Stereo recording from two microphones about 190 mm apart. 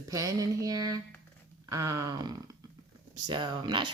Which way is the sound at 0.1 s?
15° right (ahead or behind).